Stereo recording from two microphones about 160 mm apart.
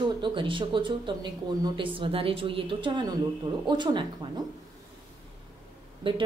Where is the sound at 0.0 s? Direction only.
30° right (ahead or behind).